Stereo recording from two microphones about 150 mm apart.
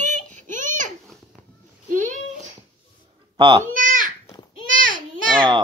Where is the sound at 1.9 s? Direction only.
55° right (ahead or behind).